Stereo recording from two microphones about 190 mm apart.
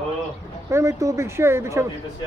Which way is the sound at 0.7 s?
15° right (ahead or behind).